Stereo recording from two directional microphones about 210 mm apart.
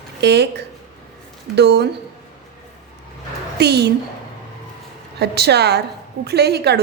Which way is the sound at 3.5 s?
50° right (ahead or behind).